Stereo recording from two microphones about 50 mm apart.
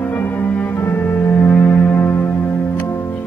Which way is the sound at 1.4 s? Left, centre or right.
Left.